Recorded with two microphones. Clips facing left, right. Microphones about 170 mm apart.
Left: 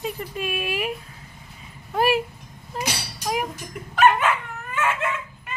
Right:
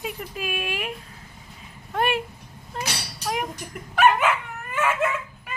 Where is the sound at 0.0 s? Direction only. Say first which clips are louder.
Left 3 dB; centre (ahead or behind).